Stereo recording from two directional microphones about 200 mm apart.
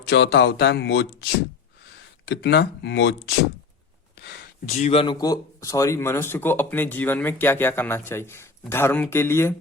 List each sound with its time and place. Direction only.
0.1 s speech: 60° left (ahead or behind)
4.6 s speech: 35° left (ahead or behind); by 9.6 s 10° left (ahead or behind)